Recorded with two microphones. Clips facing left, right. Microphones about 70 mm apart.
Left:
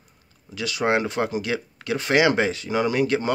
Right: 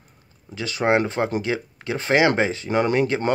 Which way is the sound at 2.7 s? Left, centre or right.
Right.